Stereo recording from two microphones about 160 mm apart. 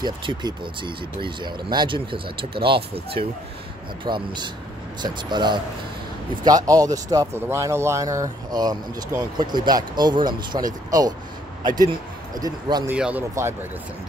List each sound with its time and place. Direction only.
0.0 s speech: 30° right (ahead or behind)
4.0 s speech: 30° right (ahead or behind)
12.8 s speech: 10° right (ahead or behind)